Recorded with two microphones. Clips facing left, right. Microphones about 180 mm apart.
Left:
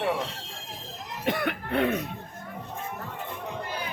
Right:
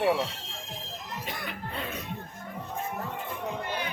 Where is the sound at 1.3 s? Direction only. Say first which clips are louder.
Left 13 dB; 65° left (ahead or behind).